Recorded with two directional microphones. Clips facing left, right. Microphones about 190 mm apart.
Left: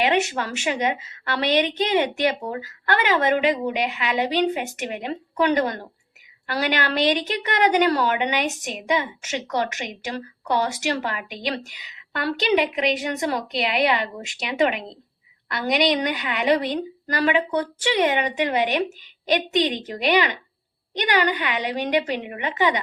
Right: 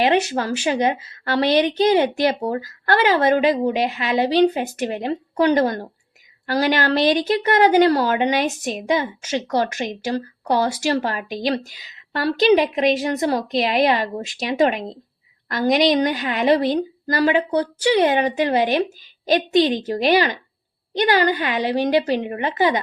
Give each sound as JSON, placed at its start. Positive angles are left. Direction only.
{"t": 0.0, "sound": "a woman's voice", "side_deg": -40}